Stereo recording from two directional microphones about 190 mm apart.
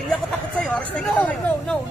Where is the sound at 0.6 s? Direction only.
5° left (ahead or behind).